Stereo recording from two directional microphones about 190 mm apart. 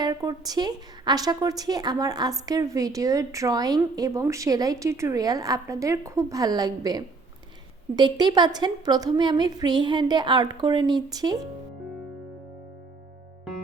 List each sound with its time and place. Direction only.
0.0 s a woman's voice: 20° right (ahead or behind)